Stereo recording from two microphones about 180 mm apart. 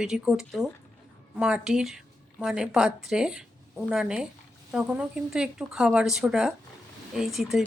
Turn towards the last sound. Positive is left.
turn(degrees=0)  # may be behind; listen again after turning